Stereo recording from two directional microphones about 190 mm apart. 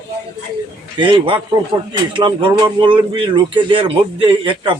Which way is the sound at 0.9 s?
25° right (ahead or behind).